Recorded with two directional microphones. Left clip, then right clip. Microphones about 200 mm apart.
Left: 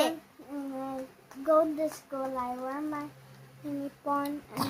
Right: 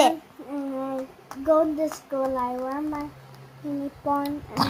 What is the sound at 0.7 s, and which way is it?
Speech, 25° left (ahead or behind).